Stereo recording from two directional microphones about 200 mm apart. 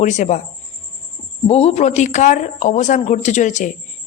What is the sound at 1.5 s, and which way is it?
A woman's voice, 30° left (ahead or behind).